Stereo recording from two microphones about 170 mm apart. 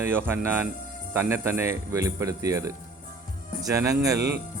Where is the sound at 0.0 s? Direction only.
15° right (ahead or behind).